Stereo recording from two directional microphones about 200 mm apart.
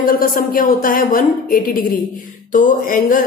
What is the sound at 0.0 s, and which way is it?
A woman's voice, 45° left (ahead or behind).